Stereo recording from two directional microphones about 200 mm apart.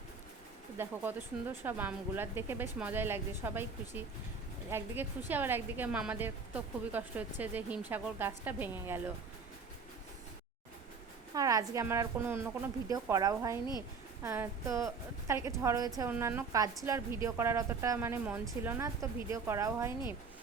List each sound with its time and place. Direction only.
0.8 s a woman's voice: 10° right (ahead or behind)
11.3 s a woman's voice: 15° right (ahead or behind)